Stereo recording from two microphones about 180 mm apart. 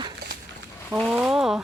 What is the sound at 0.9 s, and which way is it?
Speech, 5° right (ahead or behind).